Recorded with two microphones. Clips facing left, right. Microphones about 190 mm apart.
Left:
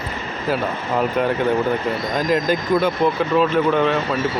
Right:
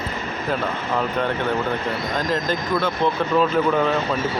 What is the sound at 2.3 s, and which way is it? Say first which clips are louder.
Speech: left 6 dB; 10° left (ahead or behind).